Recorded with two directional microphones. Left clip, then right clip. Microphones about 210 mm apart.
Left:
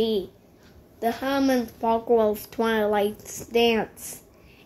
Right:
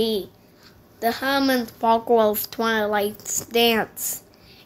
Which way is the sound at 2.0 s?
15° right (ahead or behind).